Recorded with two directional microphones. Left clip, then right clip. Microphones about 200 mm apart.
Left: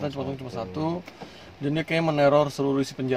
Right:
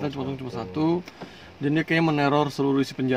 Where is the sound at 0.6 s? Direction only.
15° right (ahead or behind).